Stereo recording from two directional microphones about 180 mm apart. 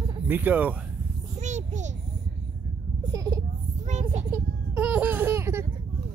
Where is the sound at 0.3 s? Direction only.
10° right (ahead or behind).